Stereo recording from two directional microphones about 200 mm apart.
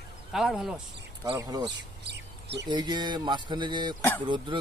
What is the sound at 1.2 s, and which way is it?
Speech, 20° right (ahead or behind).